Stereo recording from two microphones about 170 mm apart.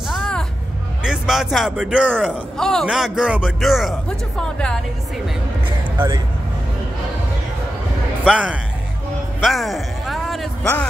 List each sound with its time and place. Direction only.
0.2 s music: 5° left (ahead or behind)
1.0 s a man's voice: 5° right (ahead or behind)
2.5 s a man's voice: 5° left (ahead or behind)
5.9 s speech: 20° right (ahead or behind)
8.3 s speech: 5° left (ahead or behind)
9.4 s a sound: centre (ahead or behind)